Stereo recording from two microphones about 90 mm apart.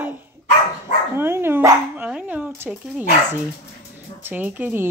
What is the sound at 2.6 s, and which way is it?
Speech, 25° right (ahead or behind).